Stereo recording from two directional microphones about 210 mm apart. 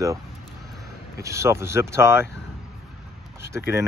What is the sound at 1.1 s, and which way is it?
Speech, 15° right (ahead or behind).